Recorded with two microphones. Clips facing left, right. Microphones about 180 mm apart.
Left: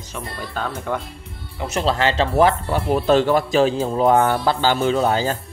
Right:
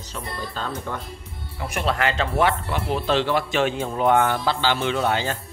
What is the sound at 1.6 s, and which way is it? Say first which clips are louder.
Speech: left 4 dB; 25° left (ahead or behind).